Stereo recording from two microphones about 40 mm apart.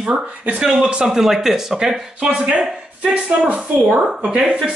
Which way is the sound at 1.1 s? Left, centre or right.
Centre.